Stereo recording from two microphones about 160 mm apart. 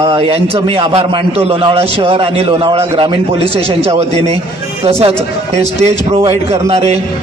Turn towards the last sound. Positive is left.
turn(degrees=-40)  # may be behind; listen again after turning